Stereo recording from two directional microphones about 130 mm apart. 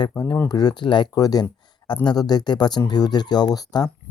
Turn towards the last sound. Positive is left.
turn(degrees=30)  # may be behind; listen again after turning